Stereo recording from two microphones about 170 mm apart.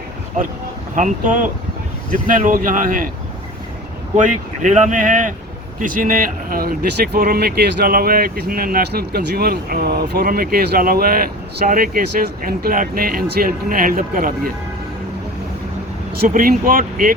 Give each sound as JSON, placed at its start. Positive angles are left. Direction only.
{"t": 0.9, "sound": "speech", "side_deg": -50}
{"t": 4.2, "sound": "speech", "side_deg": -45}
{"t": 16.1, "sound": "speech", "side_deg": -55}